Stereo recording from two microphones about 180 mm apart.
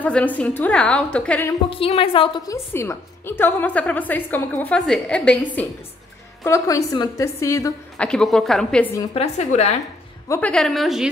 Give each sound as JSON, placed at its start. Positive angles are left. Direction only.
{"t": 0.0, "sound": "a woman's voice", "side_deg": 10}
{"t": 1.7, "sound": "a woman's voice", "side_deg": 30}
{"t": 6.4, "sound": "a woman's voice", "side_deg": 15}
{"t": 8.0, "sound": "a woman's voice", "side_deg": 5}
{"t": 9.1, "sound": "a woman's voice", "side_deg": 35}
{"t": 10.2, "sound": "a woman's voice", "side_deg": 15}
{"t": 10.5, "sound": "a woman's voice", "side_deg": 0}